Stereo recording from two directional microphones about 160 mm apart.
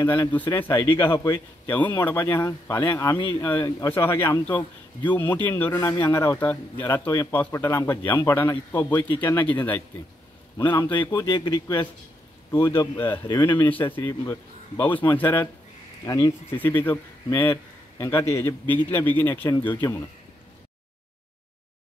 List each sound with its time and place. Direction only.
0.0 s a man's voice: 15° left (ahead or behind)
0.7 s speech: 30° left (ahead or behind)
0.9 s a man's voice: 15° left (ahead or behind)
3.2 s speech: 30° left (ahead or behind)
3.4 s a man's voice: 15° left (ahead or behind)
11.0 s a man's voice: 20° left (ahead or behind)